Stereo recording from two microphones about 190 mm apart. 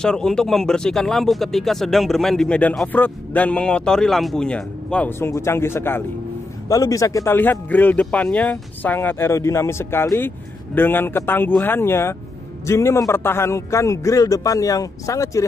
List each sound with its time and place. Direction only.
0.0 s speech: 5° left (ahead or behind)